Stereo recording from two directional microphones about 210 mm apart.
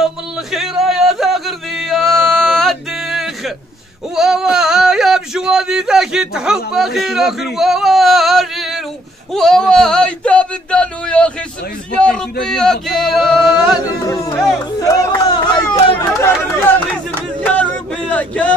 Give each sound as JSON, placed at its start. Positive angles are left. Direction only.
{"t": 0.0, "sound": "music", "side_deg": 0}
{"t": 4.1, "sound": "speech", "side_deg": -5}
{"t": 14.0, "sound": "speech", "side_deg": 15}
{"t": 14.8, "sound": "chatter", "side_deg": 15}
{"t": 16.0, "sound": "speech", "side_deg": 10}
{"t": 17.5, "sound": "a sound", "side_deg": 5}